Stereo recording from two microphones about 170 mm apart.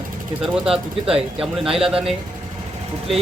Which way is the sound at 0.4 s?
5° right (ahead or behind).